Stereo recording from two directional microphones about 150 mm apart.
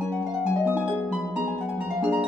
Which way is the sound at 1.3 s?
10° right (ahead or behind).